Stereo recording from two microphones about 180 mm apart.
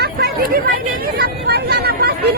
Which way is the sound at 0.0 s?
65° right (ahead or behind).